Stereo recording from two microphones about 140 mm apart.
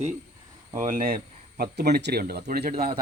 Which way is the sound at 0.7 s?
70° right (ahead or behind).